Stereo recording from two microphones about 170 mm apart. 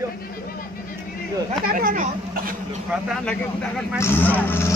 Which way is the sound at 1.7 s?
55° right (ahead or behind).